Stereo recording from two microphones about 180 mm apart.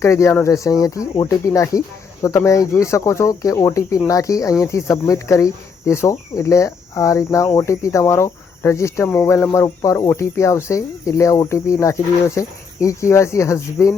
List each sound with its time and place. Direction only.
0.0 s speech: 15° left (ahead or behind)